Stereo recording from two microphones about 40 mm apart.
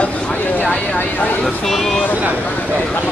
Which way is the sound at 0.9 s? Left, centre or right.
Left.